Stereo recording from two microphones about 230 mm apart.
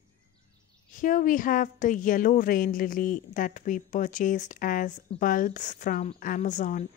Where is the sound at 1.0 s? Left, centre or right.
Left.